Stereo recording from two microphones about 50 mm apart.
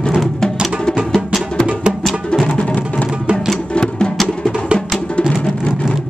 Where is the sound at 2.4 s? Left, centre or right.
Left.